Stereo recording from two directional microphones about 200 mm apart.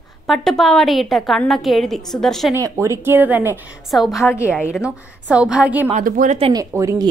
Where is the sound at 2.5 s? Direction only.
15° right (ahead or behind).